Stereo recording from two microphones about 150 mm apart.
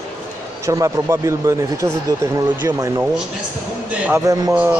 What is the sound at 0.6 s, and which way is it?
Speech, 20° right (ahead or behind).